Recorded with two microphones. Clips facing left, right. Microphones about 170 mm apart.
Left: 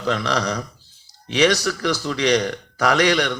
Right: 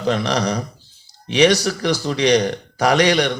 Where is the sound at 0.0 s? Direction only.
20° right (ahead or behind).